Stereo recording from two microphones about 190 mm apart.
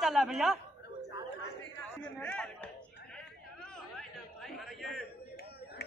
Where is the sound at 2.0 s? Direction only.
10° left (ahead or behind).